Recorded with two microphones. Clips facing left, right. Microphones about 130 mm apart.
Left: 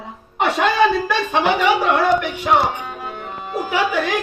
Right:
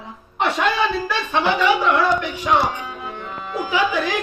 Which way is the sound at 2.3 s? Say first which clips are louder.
Left 2 dB; 30° left (ahead or behind).